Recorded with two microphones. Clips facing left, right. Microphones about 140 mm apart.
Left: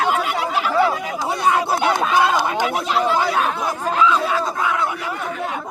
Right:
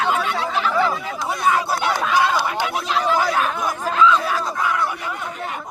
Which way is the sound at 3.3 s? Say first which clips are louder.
Left 1 dB; 30° left (ahead or behind).